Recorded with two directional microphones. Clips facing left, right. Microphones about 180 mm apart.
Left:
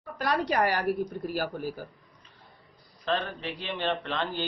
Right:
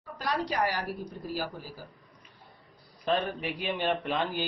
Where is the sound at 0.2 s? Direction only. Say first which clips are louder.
Left 3 dB; 60° left (ahead or behind).